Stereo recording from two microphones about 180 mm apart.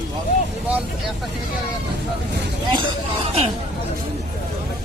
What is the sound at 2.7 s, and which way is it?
Speech, 30° right (ahead or behind).